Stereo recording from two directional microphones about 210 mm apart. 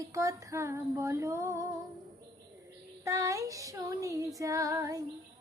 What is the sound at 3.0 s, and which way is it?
Female singing, 15° right (ahead or behind).